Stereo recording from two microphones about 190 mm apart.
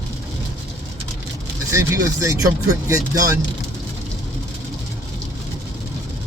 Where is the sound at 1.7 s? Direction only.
15° right (ahead or behind).